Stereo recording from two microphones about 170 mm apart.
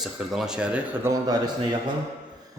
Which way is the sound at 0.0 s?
Centre (ahead or behind).